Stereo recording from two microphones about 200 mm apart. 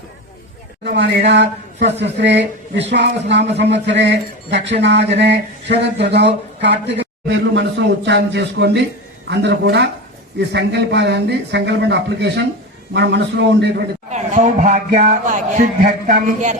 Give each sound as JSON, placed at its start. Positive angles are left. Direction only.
{"t": 0.9, "sound": "a man's voice", "side_deg": -60}
{"t": 14.1, "sound": "speech", "side_deg": -35}